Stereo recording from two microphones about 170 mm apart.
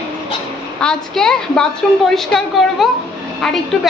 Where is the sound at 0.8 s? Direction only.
5° left (ahead or behind).